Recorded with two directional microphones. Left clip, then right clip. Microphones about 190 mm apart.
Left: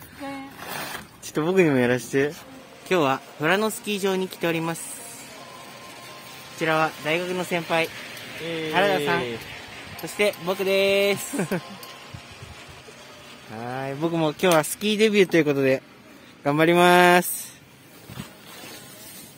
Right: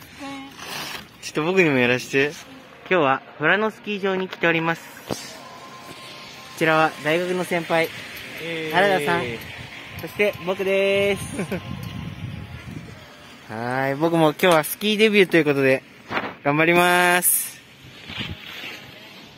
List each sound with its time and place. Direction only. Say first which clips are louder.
0.6 s vehicle: right 3 dB; 10° left (ahead or behind)
1.3 s speech: right 1 dB; 20° left (ahead or behind)
6.6 s speech: right 4 dB; 65° right (ahead or behind)
10.1 s speech: right 1 dB; 10° right (ahead or behind)
13.5 s speech: right 7 dB; 60° right (ahead or behind)
14.1 s speech: right 3 dB; 25° right (ahead or behind)
14.8 s speech: right 2 dB; centre (ahead or behind)